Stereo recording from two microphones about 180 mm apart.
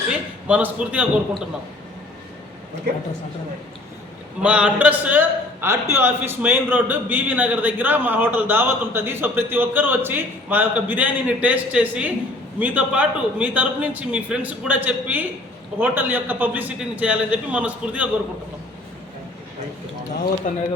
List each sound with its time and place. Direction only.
0.1 s a man's voice: 5° right (ahead or behind)
4.4 s a man's voice: 5° right (ahead or behind)
20.4 s speech: 40° left (ahead or behind)